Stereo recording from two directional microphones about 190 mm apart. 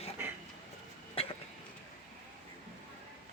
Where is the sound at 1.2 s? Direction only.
30° left (ahead or behind).